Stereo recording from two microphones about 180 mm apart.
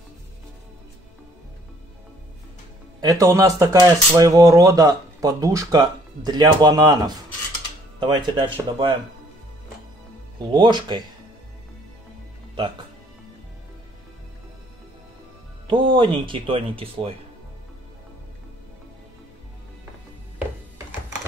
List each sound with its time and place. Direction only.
3.0 s speech: 20° right (ahead or behind)
10.5 s speech: 25° right (ahead or behind)
15.6 s speech: 25° right (ahead or behind)